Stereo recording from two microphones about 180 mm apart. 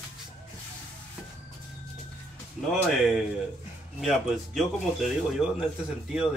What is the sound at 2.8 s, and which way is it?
Speech, centre (ahead or behind).